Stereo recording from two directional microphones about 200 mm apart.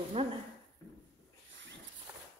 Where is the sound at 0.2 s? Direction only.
25° right (ahead or behind).